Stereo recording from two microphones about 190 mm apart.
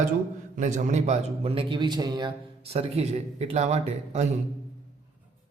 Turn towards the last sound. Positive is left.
turn(degrees=-35)  # may be behind; listen again after turning